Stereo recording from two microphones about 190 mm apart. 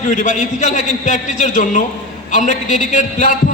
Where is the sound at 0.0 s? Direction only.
40° left (ahead or behind).